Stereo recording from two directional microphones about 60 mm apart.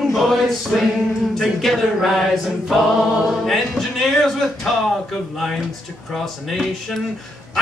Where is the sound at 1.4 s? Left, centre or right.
Centre.